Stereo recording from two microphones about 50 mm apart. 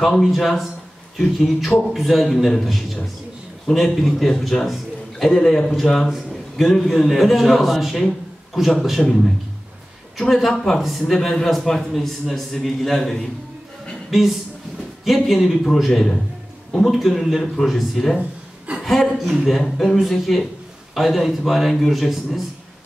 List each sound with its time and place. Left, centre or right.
0.0 s a man's voice: centre
10.1 s a man's voice: centre
15.0 s a man's voice: centre